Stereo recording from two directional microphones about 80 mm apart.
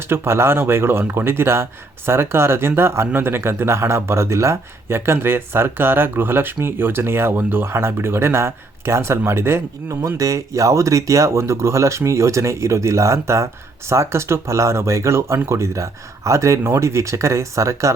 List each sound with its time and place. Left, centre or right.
0.1 s speech: right
10.1 s speech: right